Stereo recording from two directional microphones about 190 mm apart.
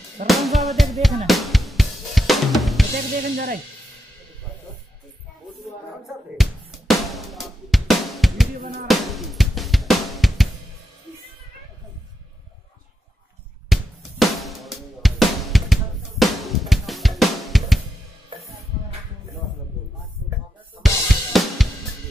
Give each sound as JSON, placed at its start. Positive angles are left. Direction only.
{"t": 0.3, "sound": "music", "side_deg": 0}
{"t": 1.2, "sound": "drum", "side_deg": 0}
{"t": 3.2, "sound": "music", "side_deg": -50}
{"t": 6.3, "sound": "drum", "side_deg": 0}
{"t": 13.7, "sound": "drum", "side_deg": 0}
{"t": 20.8, "sound": "drum kit", "side_deg": 0}